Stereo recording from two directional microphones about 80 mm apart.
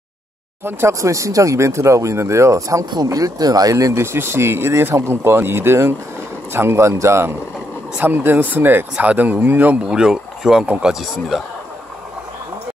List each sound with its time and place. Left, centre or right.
0.7 s speech: right; by 11.4 s centre